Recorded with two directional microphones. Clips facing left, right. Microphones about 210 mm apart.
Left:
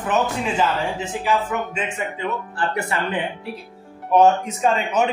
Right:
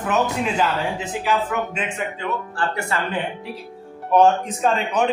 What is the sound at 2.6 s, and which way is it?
Speech, 20° left (ahead or behind).